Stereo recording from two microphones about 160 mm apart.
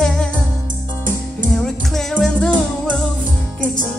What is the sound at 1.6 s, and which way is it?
Music, centre (ahead or behind).